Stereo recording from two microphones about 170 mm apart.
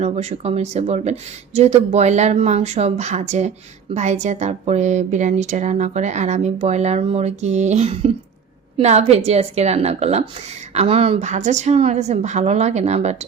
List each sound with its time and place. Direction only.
0.0 s a woman's voice: 40° right (ahead or behind)